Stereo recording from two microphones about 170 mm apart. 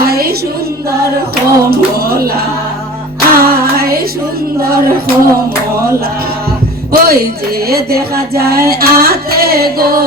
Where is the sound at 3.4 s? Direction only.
60° right (ahead or behind).